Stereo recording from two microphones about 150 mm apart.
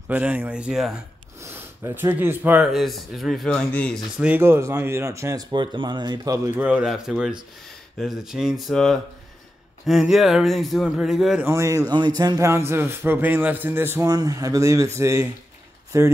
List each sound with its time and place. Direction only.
0.1 s speech: 10° right (ahead or behind)
1.4 s speech: 15° right (ahead or behind)
2.6 s a man's voice: centre (ahead or behind)
4.2 s a man's voice: 15° right (ahead or behind)
11.4 s speech: 20° right (ahead or behind)